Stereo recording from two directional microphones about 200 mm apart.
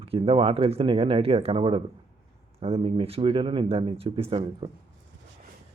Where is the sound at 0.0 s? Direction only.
30° right (ahead or behind).